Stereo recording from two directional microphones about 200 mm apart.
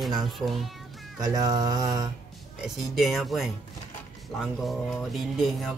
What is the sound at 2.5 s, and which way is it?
Speech, centre (ahead or behind).